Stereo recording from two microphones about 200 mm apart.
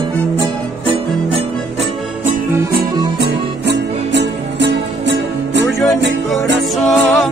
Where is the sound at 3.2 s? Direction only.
60° right (ahead or behind).